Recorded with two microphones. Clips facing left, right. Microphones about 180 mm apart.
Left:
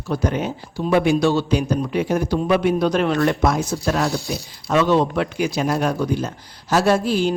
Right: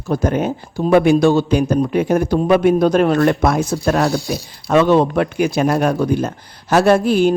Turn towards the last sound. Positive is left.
turn(degrees=-55)  # may be behind; listen again after turning